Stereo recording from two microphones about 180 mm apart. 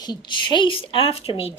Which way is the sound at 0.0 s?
25° left (ahead or behind).